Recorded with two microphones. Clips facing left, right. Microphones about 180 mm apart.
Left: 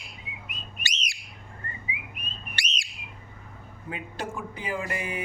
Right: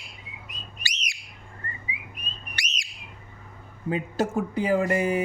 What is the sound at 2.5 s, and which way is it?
Whistle, 30° left (ahead or behind).